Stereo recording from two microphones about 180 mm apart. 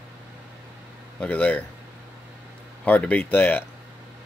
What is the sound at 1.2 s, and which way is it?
Speech, 10° left (ahead or behind).